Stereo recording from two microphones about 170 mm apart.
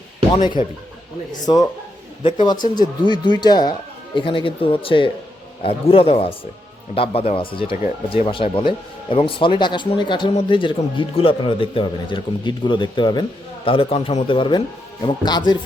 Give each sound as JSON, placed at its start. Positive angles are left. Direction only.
{"t": 0.3, "sound": "speech", "side_deg": 25}
{"t": 2.7, "sound": "a man's voice", "side_deg": 25}